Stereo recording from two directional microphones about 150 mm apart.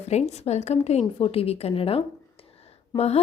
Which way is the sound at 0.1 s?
50° left (ahead or behind).